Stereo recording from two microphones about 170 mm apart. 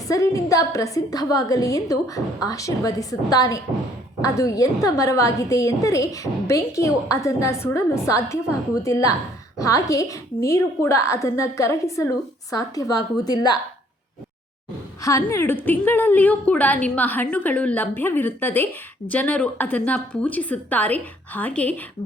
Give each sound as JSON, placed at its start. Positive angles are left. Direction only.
{"t": 0.1, "sound": "a woman's voice", "side_deg": 20}
{"t": 15.0, "sound": "a woman's voice", "side_deg": 15}